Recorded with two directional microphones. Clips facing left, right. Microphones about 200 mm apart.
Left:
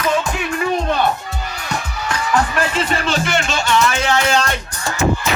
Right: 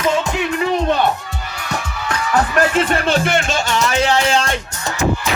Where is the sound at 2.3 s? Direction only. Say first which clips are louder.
Right 3 dB; 45° right (ahead or behind); by 4.5 s 30° right (ahead or behind).